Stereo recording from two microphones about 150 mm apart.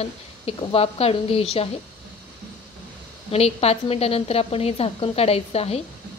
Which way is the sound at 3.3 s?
45° left (ahead or behind).